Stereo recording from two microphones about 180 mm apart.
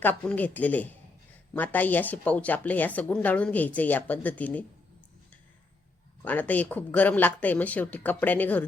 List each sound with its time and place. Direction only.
0.0 s a woman's voice: 10° left (ahead or behind)
6.2 s a woman's voice: 10° left (ahead or behind)